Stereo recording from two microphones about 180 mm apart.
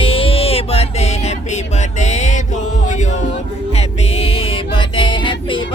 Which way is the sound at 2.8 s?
40° left (ahead or behind).